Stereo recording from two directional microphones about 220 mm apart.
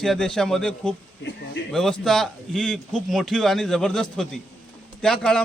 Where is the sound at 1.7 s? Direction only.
Centre (ahead or behind).